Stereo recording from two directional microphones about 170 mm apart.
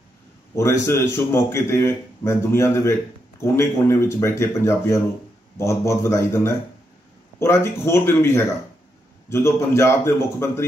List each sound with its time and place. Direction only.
0.6 s a man's voice: 15° left (ahead or behind)